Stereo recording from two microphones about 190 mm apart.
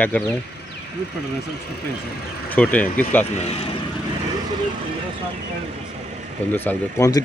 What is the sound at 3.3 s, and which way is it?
Speech, 35° left (ahead or behind).